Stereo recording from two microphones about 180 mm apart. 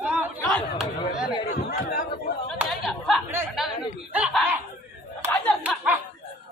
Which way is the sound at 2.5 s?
Centre (ahead or behind).